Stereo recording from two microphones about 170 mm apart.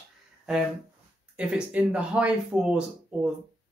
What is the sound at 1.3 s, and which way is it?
Speech, 5° right (ahead or behind).